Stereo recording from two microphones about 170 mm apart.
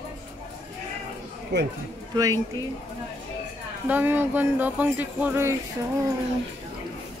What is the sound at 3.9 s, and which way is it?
Speech, 10° right (ahead or behind).